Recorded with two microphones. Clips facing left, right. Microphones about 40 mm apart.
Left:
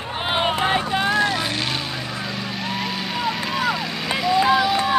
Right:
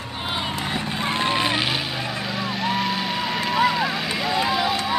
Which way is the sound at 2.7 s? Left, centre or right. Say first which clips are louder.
Right 3 dB; centre.